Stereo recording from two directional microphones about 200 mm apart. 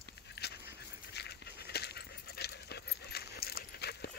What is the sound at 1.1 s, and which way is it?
Dog, 55° left (ahead or behind).